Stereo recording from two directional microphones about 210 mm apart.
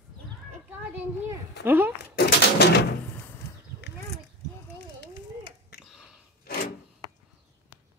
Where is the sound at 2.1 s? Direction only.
50° left (ahead or behind).